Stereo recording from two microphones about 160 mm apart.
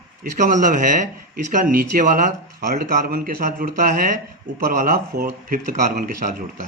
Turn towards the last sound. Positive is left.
turn(degrees=-60)  # may be behind; listen again after turning